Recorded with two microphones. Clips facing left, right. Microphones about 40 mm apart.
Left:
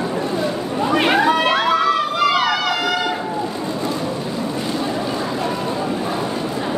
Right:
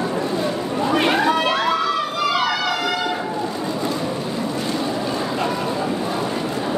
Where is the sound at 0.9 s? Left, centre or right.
Left.